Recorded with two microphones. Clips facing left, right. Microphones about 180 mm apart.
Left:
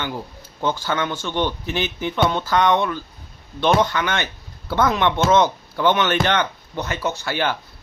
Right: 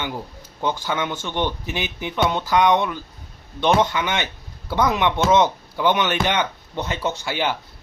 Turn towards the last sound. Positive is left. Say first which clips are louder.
# left 1 dB
turn(degrees=-15)  # may be behind; listen again after turning